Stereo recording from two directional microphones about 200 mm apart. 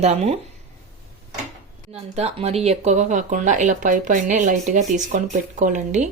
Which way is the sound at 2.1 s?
30° right (ahead or behind).